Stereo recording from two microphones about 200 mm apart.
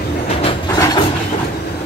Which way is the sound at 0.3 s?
30° left (ahead or behind).